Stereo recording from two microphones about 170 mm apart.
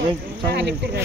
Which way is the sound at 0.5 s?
90° right.